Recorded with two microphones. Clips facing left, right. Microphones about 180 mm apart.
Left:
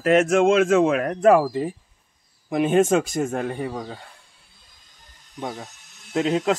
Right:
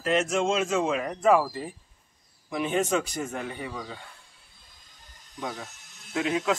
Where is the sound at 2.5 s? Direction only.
55° left (ahead or behind).